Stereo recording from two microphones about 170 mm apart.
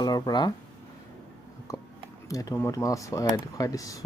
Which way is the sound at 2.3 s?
20° left (ahead or behind).